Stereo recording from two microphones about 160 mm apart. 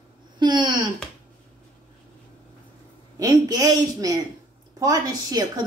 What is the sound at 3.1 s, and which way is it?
Speech, 20° right (ahead or behind).